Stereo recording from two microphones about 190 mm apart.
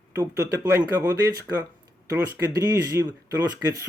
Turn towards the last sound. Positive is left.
turn(degrees=-15)  # may be behind; listen again after turning